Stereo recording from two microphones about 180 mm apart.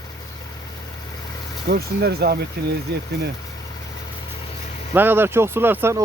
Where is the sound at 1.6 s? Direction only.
60° right (ahead or behind).